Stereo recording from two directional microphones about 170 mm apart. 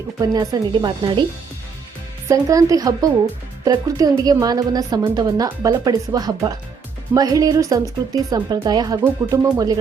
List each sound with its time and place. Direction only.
0.2 s a woman's voice: 20° right (ahead or behind)
2.2 s a woman's voice: 20° right (ahead or behind)